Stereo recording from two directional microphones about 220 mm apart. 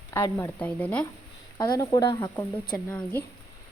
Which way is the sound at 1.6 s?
15° left (ahead or behind).